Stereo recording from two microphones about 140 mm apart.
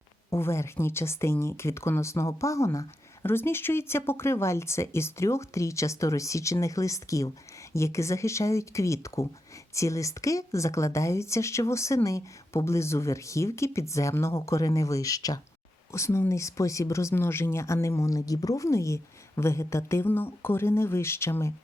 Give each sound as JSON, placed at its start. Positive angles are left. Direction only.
{"t": 0.3, "sound": "speech", "side_deg": 20}